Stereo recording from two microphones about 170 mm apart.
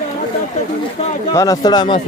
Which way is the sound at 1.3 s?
20° left (ahead or behind).